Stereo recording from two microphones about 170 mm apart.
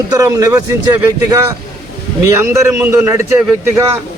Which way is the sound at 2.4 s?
15° right (ahead or behind).